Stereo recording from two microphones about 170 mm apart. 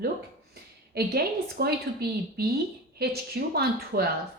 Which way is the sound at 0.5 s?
65° right (ahead or behind).